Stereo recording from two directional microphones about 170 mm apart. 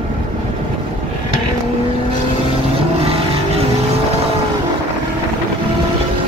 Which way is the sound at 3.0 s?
35° right (ahead or behind).